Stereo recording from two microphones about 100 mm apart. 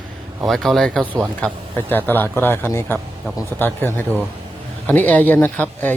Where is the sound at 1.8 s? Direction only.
20° left (ahead or behind).